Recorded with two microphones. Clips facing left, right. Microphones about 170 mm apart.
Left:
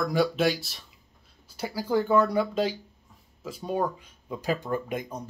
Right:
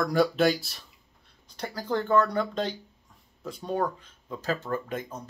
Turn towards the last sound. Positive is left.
turn(degrees=15)  # may be behind; listen again after turning